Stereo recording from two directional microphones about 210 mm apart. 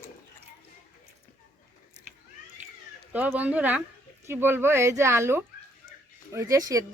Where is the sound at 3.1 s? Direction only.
10° right (ahead or behind).